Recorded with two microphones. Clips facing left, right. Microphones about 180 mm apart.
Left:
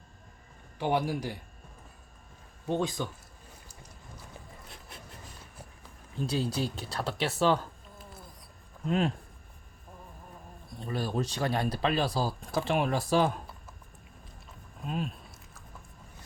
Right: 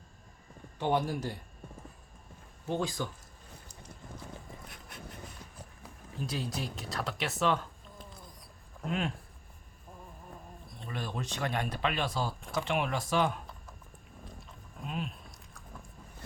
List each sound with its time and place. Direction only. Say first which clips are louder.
0.8 s speech: left 1 dB; 10° left (ahead or behind)
2.6 s speech: left 3 dB; 20° left (ahead or behind)
6.2 s speech: left 6 dB; 30° left (ahead or behind)
8.9 s speech: left 5 dB; 35° left (ahead or behind)
10.8 s speech: left 6 dB; 35° left (ahead or behind)
14.8 s speech: left 4 dB; 40° left (ahead or behind)